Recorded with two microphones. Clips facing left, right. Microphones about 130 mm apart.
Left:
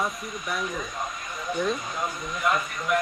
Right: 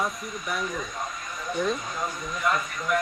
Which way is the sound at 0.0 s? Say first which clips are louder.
Even; centre (ahead or behind).